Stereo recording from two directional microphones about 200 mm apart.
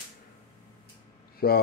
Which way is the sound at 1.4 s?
50° left (ahead or behind).